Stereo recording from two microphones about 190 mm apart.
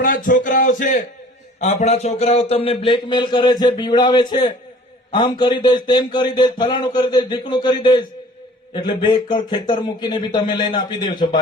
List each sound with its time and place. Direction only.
0.0 s a man's voice: 45° left (ahead or behind); by 11.3 s 25° left (ahead or behind)